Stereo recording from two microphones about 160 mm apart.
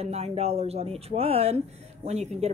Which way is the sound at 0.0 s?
40° right (ahead or behind).